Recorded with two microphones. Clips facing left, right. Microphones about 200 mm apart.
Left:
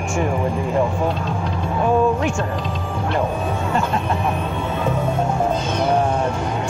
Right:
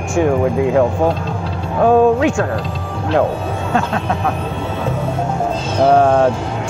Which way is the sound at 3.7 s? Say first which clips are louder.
Right 5 dB; 80° right.